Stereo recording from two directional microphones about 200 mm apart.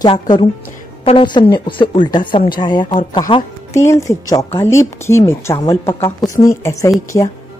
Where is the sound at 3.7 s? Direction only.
15° left (ahead or behind).